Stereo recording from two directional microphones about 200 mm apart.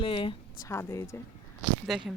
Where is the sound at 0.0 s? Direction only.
25° left (ahead or behind).